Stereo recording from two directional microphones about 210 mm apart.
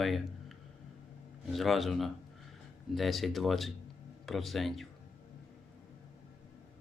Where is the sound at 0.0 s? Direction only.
Centre (ahead or behind).